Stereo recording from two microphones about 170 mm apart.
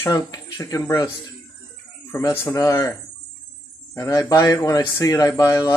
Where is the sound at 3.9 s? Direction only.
20° left (ahead or behind).